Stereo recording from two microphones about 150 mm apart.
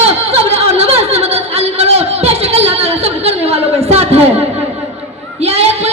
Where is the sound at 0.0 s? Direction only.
45° right (ahead or behind).